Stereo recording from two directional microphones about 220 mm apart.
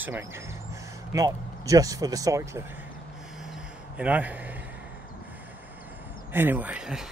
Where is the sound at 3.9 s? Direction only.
5° right (ahead or behind).